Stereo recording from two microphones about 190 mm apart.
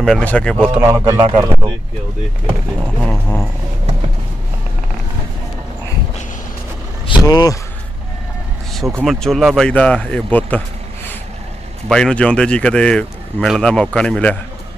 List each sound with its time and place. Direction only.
0.0 s speech: 5° left (ahead or behind)
0.7 s a man's voice: 15° right (ahead or behind)
3.0 s speech: 5° left (ahead or behind)
7.1 s speech: 20° left (ahead or behind)
9.0 s speech: centre (ahead or behind)
11.9 s speech: 5° left (ahead or behind)